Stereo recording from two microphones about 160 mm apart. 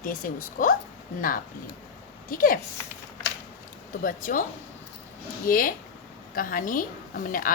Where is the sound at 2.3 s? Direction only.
60° left (ahead or behind).